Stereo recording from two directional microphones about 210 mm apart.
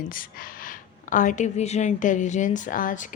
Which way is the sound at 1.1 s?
40° left (ahead or behind).